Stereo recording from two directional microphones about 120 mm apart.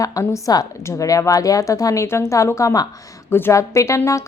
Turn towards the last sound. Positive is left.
turn(degrees=25)  # may be behind; listen again after turning